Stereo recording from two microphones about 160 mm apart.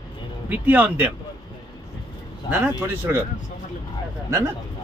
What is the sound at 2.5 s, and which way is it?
Speech, 10° right (ahead or behind).